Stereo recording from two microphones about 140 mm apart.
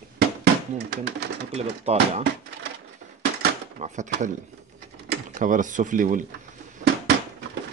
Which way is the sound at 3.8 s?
60° right (ahead or behind).